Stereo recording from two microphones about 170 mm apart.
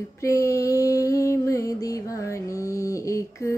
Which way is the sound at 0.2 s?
20° left (ahead or behind).